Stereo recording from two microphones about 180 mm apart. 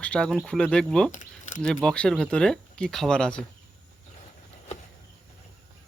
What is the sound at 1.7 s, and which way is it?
Speech, 5° left (ahead or behind).